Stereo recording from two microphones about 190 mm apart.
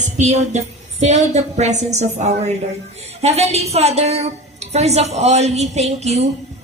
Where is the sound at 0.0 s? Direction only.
35° right (ahead or behind).